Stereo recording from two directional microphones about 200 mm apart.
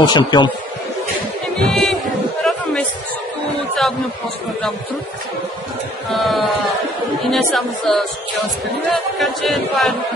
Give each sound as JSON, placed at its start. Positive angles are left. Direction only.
{"t": 0.0, "sound": "a man's voice", "side_deg": 20}
{"t": 1.6, "sound": "music", "side_deg": 0}
{"t": 2.4, "sound": "a sound", "side_deg": 0}
{"t": 6.1, "sound": "music", "side_deg": 0}